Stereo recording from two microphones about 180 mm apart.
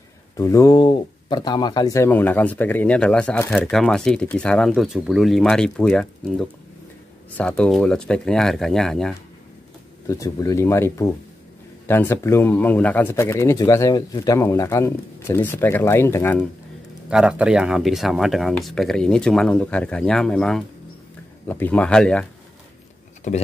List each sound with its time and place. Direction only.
0.4 s speech: 15° left (ahead or behind)
10.0 s speech: 20° left (ahead or behind)
17.1 s speech: 5° right (ahead or behind)
23.3 s speech: 45° left (ahead or behind)